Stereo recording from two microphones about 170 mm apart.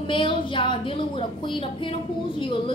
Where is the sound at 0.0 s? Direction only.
30° left (ahead or behind).